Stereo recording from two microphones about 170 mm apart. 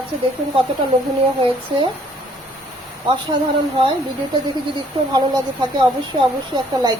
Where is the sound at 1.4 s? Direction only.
30° right (ahead or behind).